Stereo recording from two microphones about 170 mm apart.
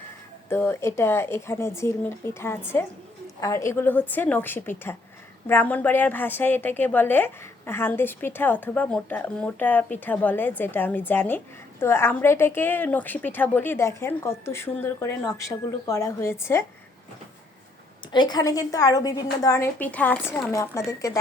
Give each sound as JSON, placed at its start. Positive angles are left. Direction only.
{"t": 0.5, "sound": "a woman's voice", "side_deg": 15}
{"t": 18.1, "sound": "a woman's voice", "side_deg": 25}